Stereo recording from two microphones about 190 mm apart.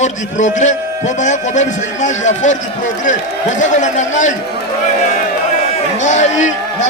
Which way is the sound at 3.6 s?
40° left (ahead or behind).